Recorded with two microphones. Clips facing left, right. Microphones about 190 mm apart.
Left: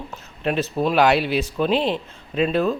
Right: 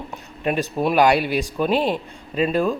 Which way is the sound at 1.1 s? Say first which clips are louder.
Even; 50° right (ahead or behind).